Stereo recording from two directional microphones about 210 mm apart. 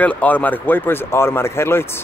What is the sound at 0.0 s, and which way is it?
Speech, 5° left (ahead or behind).